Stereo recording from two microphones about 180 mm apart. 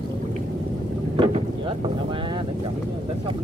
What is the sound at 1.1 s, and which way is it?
Boat, 30° right (ahead or behind).